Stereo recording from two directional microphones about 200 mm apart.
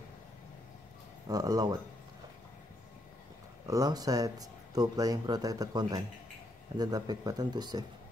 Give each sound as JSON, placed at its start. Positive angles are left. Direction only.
{"t": 1.2, "sound": "speech", "side_deg": -20}
{"t": 3.6, "sound": "speech", "side_deg": -15}